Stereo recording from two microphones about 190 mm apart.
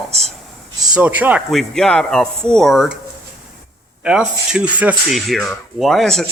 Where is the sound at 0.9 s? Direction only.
10° right (ahead or behind).